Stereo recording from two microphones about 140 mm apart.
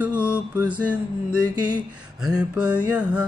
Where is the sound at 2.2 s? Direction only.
5° right (ahead or behind).